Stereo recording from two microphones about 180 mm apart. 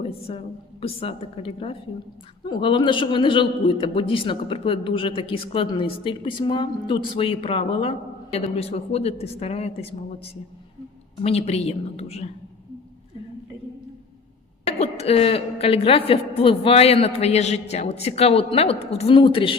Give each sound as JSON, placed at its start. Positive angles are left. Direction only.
{"t": 0.0, "sound": "a woman's voice", "side_deg": 30}
{"t": 11.2, "sound": "a woman's voice", "side_deg": 35}
{"t": 14.6, "sound": "a woman's voice", "side_deg": 35}